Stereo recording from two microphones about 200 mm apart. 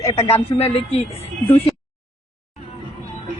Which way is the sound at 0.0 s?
30° left (ahead or behind).